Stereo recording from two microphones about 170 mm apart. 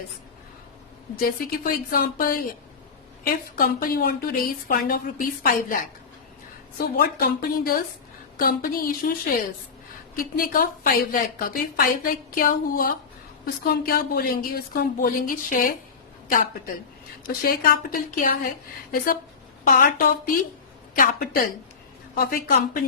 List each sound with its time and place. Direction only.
1.2 s a woman's voice: 55° left (ahead or behind)
10.2 s a woman's voice: 55° left (ahead or behind)
17.2 s a woman's voice: 60° left (ahead or behind)